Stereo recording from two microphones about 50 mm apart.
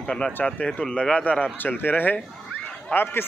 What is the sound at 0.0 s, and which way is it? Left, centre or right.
A man's voice, centre.